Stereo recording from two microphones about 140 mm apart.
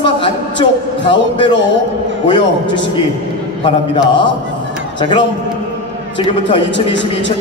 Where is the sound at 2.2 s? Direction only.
35° left (ahead or behind).